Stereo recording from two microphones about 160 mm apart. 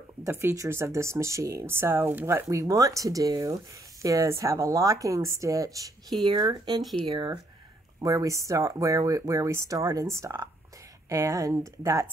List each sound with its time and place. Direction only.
0.2 s speech: 15° right (ahead or behind)
6.8 s speech: centre (ahead or behind)
7.1 s speech: 30° right (ahead or behind)